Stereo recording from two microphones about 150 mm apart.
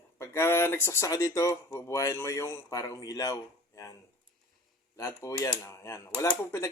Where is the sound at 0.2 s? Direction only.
15° left (ahead or behind).